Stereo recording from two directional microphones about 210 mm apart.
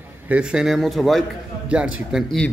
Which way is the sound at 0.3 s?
5° right (ahead or behind).